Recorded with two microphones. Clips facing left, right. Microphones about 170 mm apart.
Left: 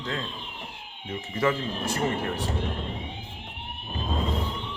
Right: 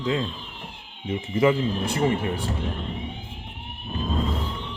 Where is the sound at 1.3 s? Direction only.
15° right (ahead or behind).